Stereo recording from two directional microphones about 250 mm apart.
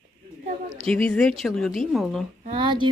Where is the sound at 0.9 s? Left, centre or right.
Centre.